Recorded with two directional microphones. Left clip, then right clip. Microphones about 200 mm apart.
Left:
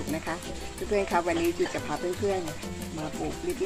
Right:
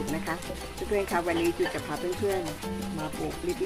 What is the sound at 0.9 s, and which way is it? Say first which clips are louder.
Speech: left 2 dB; 20° left (ahead or behind).